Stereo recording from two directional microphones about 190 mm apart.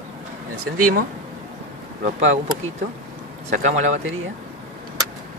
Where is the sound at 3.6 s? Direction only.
40° right (ahead or behind).